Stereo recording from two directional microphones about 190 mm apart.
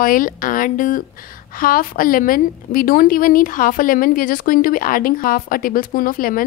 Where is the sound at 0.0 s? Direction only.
45° left (ahead or behind).